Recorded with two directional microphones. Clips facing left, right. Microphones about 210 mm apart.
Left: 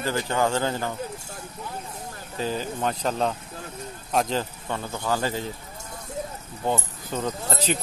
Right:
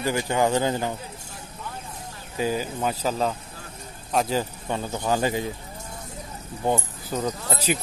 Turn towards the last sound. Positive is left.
turn(degrees=-10)  # may be behind; listen again after turning